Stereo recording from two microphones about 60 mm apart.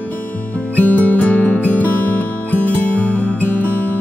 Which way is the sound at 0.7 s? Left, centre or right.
Left.